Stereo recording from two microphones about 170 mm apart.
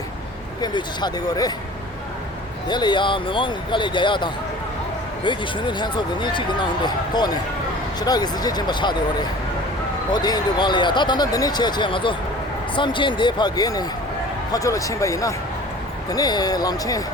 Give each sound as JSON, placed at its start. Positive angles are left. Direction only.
{"t": 0.6, "sound": "speech", "side_deg": 25}
{"t": 2.6, "sound": "speech", "side_deg": 25}
{"t": 10.1, "sound": "speech", "side_deg": 25}